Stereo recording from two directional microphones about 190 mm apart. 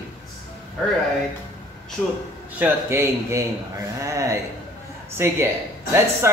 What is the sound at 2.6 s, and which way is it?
Mantra, 15° right (ahead or behind).